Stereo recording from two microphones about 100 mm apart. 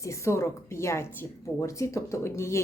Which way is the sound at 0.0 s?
30° left (ahead or behind).